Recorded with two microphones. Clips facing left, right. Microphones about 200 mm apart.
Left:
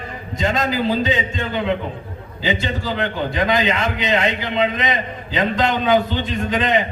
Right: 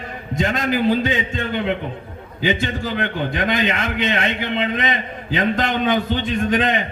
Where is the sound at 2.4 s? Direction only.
55° right (ahead or behind).